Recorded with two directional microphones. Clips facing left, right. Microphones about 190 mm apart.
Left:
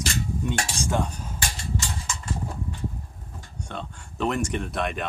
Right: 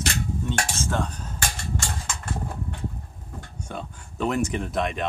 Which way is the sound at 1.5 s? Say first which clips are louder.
Even; 55° right (ahead or behind).